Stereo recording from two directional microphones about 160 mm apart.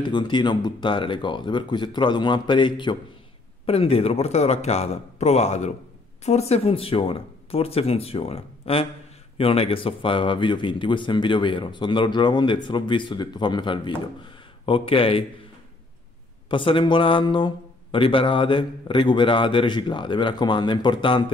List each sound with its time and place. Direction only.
0.0 s speech: 30° left (ahead or behind)
16.4 s speech: 30° left (ahead or behind)